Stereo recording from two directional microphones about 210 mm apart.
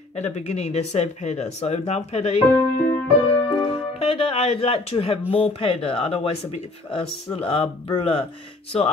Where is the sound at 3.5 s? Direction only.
25° left (ahead or behind).